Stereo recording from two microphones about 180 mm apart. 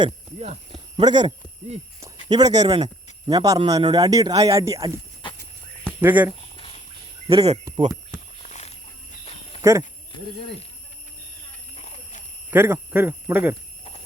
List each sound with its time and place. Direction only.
0.3 s speech: 35° right (ahead or behind)
2.3 s a man's voice: 25° right (ahead or behind)
6.0 s speech: 10° right (ahead or behind)
6.6 s a sound: 30° left (ahead or behind)
7.3 s speech: 35° right (ahead or behind)
8.4 s a sound: 40° left (ahead or behind)
9.6 s speech: 15° right (ahead or behind)
11.8 s a sound: 40° left (ahead or behind)
12.5 s speech: 10° right (ahead or behind)